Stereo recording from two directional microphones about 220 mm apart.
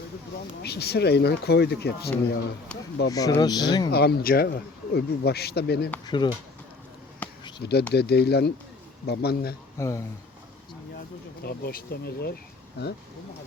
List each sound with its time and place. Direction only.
0.6 s speech: 45° left (ahead or behind)
2.7 s speech: 5° left (ahead or behind)
3.1 s speech: 15° left (ahead or behind)
3.9 s speech: 45° left (ahead or behind)
6.1 s speech: 20° left (ahead or behind)
7.2 s a sound: 5° left (ahead or behind)
7.6 s speech: 45° left (ahead or behind)
9.7 s speech: 15° left (ahead or behind)
11.4 s speech: 45° left (ahead or behind)